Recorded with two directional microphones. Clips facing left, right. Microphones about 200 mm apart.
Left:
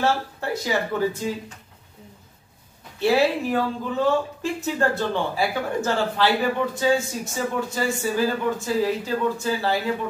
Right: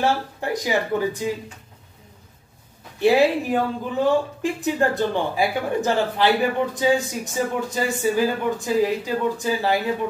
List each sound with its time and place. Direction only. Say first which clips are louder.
0.0 s speech: right 1 dB; 15° right (ahead or behind)
3.0 s speech: right 3 dB; 15° right (ahead or behind)